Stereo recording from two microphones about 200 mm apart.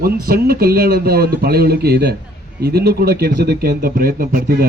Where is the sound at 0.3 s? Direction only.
50° right (ahead or behind).